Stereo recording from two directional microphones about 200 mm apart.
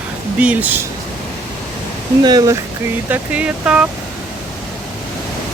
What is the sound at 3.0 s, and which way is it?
Speech, 10° right (ahead or behind).